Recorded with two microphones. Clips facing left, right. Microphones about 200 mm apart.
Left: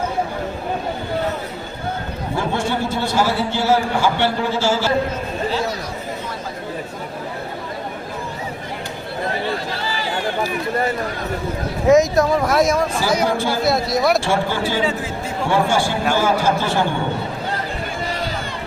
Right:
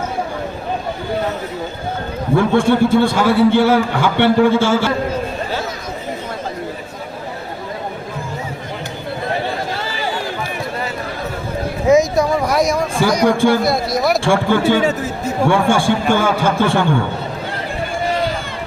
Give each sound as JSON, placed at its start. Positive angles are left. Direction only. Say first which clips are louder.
{"t": 2.3, "sound": "a man's voice", "louder": "right 9 dB", "side_deg": -55}
{"t": 11.9, "sound": "speech", "louder": "even", "side_deg": 0}
{"t": 14.3, "sound": "a man's voice", "louder": "right 6 dB", "side_deg": -55}